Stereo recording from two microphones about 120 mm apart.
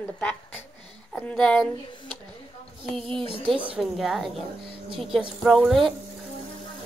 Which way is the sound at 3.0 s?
50° right (ahead or behind).